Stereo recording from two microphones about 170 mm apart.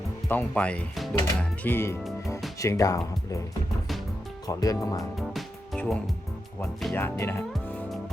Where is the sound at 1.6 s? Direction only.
15° left (ahead or behind).